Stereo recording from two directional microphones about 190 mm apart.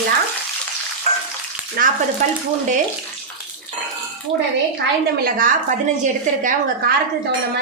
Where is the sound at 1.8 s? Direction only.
50° right (ahead or behind).